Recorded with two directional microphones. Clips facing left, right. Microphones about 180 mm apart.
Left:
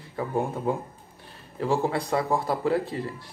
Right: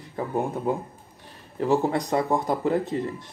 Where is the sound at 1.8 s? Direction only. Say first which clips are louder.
Right 2 dB; 20° right (ahead or behind).